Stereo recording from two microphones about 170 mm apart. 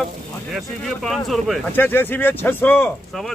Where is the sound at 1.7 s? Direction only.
10° left (ahead or behind).